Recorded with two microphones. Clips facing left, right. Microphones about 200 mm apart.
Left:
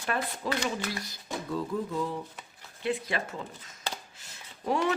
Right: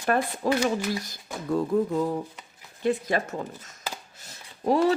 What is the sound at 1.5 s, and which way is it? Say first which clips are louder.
Speech: right 9 dB; 45° right (ahead or behind).